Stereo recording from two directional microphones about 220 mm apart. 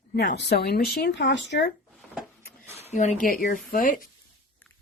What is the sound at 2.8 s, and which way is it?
Speech, 30° left (ahead or behind).